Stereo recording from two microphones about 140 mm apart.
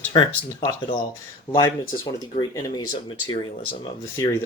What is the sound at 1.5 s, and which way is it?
Speech, 30° left (ahead or behind).